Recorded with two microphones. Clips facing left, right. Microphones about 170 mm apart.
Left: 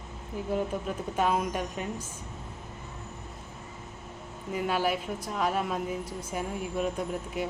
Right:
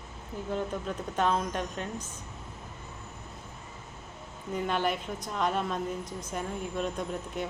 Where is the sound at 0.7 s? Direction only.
5° left (ahead or behind).